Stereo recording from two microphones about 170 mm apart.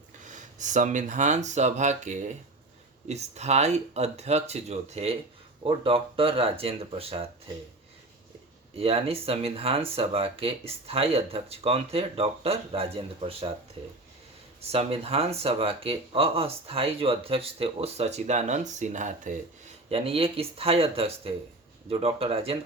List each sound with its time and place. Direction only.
0.3 s speech: 45° right (ahead or behind)
8.7 s speech: 35° right (ahead or behind)
14.6 s speech: 35° right (ahead or behind)